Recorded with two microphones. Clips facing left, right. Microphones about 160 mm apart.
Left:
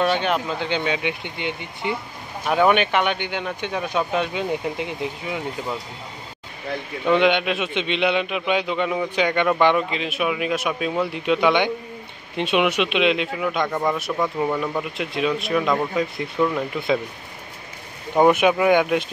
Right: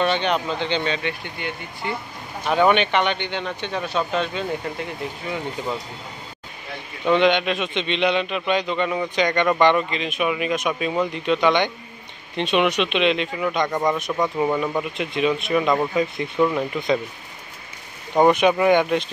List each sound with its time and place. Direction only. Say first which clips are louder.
0.0 s a man's voice: even; 5° left (ahead or behind)
2.4 s a man's voice: even; 5° left (ahead or behind)
7.1 s a man's voice: even; 5° left (ahead or behind)
18.1 s speech: even; 5° left (ahead or behind)